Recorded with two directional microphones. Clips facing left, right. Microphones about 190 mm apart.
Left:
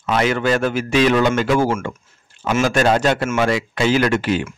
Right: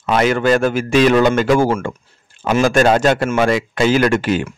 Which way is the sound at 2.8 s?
50° right (ahead or behind).